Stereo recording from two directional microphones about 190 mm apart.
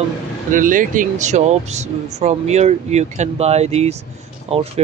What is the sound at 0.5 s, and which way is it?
Speech, 45° right (ahead or behind).